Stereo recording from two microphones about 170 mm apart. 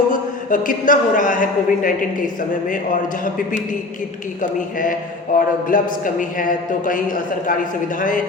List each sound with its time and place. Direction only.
0.1 s a man's voice: 50° left (ahead or behind)
5.3 s a man's voice: 55° left (ahead or behind)